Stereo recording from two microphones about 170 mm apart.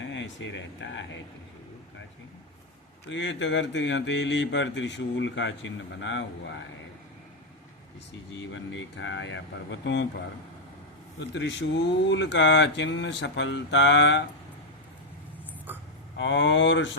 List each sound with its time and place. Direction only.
0.0 s speech: 90° left
3.1 s speech: 90° left
8.4 s speech: 90° left
11.2 s speech: 90° left
16.1 s speech: 90° left